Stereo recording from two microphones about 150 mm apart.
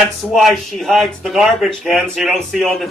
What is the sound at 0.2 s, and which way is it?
Speech, centre (ahead or behind).